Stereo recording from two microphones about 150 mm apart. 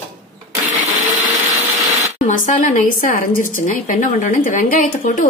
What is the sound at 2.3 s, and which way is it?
Speech, 60° left (ahead or behind).